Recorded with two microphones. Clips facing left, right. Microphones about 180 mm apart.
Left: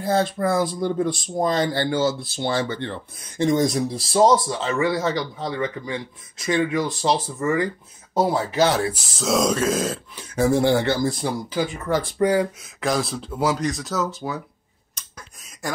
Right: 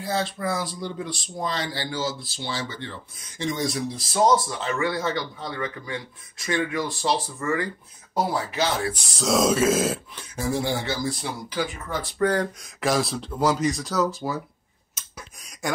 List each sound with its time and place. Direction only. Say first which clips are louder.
0.0 s speech: left 6 dB; 50° left (ahead or behind); by 8.5 s 25° left (ahead or behind)
8.9 s speech: left 1 dB; centre (ahead or behind)
10.3 s speech: left 8 dB; 65° left (ahead or behind); by 11.3 s 50° left (ahead or behind)
12.2 s speech: left 2 dB; 10° left (ahead or behind)
12.8 s speech: even; centre (ahead or behind)